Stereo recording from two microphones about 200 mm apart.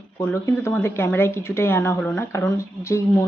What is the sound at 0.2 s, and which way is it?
A woman's voice, 10° left (ahead or behind).